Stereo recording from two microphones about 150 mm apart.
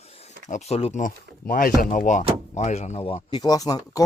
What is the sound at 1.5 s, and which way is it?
Speech, 65° left (ahead or behind).